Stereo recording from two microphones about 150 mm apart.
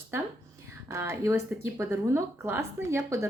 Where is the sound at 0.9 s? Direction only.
20° right (ahead or behind).